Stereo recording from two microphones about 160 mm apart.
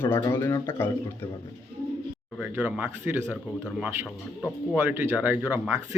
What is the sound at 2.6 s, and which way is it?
Speech, 10° right (ahead or behind).